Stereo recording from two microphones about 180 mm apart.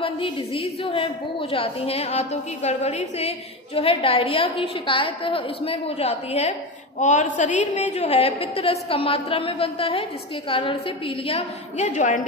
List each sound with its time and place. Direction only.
0.0 s a woman's voice: 30° left (ahead or behind)